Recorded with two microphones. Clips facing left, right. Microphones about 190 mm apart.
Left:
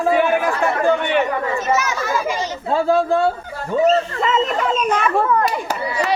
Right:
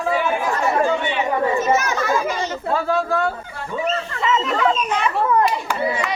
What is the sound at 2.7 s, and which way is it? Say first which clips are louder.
Speech: left 5 dB; 30° left (ahead or behind).